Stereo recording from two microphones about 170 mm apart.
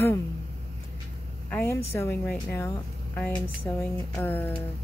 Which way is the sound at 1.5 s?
15° left (ahead or behind).